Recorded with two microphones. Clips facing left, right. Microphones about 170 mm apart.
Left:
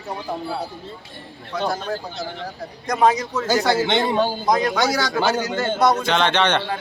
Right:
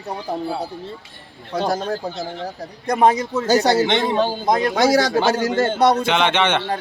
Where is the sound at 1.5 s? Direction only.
40° right (ahead or behind).